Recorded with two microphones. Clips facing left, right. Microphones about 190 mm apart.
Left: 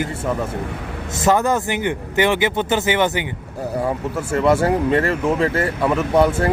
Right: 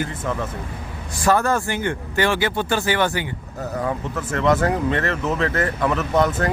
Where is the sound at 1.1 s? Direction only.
20° left (ahead or behind).